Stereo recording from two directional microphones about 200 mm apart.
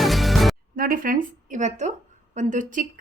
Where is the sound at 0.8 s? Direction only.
45° right (ahead or behind).